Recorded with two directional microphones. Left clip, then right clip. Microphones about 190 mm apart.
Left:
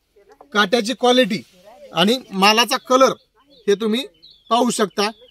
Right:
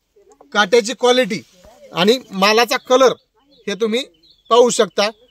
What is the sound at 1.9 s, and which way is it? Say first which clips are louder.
Speech: right 3 dB; 40° right (ahead or behind).